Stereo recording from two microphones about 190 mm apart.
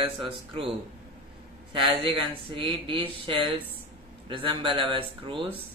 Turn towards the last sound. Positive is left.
turn(degrees=-25)  # may be behind; listen again after turning